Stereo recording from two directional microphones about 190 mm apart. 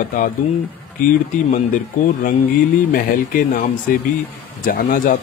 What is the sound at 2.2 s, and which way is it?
Speech, 50° left (ahead or behind).